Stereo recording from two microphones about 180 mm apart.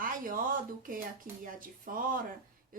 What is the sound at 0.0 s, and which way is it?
Speech, 50° right (ahead or behind).